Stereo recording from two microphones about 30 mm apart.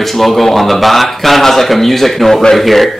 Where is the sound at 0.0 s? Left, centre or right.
Centre.